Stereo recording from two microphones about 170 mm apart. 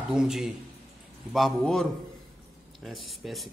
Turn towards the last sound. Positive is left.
turn(degrees=0)  # may be behind; listen again after turning